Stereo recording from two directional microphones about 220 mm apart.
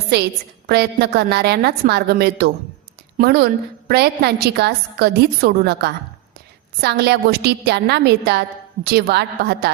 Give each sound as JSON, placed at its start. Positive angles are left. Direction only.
{"t": 0.1, "sound": "a woman's voice", "side_deg": -50}